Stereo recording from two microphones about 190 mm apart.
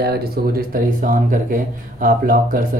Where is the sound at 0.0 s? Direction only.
55° right (ahead or behind).